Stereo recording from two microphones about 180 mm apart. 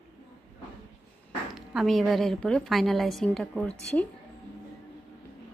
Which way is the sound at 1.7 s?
Centre (ahead or behind).